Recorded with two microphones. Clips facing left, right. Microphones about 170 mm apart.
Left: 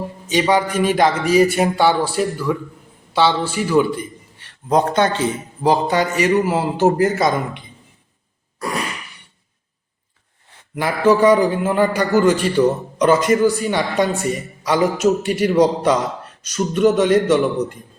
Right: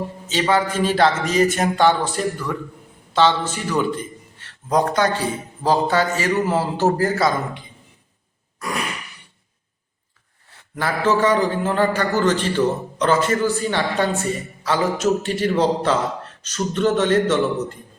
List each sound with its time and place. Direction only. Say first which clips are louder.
0.3 s a man's voice: left 3 dB; 15° left (ahead or behind)
4.7 s a man's voice: left 2 dB; 25° left (ahead or behind)
10.8 s a man's voice: left 4 dB; 15° left (ahead or behind)